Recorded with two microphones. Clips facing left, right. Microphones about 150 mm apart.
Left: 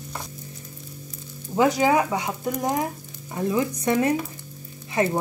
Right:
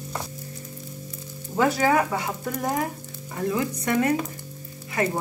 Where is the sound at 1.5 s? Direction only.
15° left (ahead or behind).